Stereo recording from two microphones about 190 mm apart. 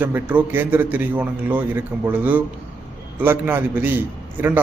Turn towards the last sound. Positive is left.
turn(degrees=-10)  # may be behind; listen again after turning